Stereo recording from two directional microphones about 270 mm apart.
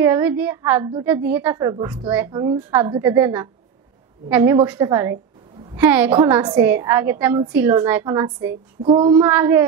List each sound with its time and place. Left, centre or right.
0.0 s a woman's voice: centre
8.8 s child singing: centre
9.3 s a woman's voice: centre